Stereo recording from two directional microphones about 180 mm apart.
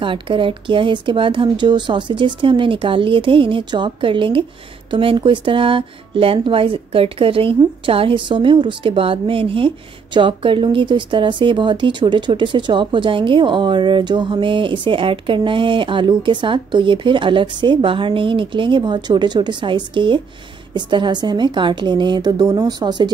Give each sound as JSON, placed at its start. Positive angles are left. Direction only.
{"t": 0.0, "sound": "speech", "side_deg": -30}